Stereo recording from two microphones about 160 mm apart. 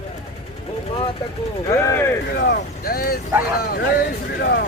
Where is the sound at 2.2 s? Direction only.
85° left.